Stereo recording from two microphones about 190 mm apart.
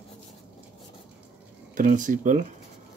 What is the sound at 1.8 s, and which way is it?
Speech, 40° right (ahead or behind).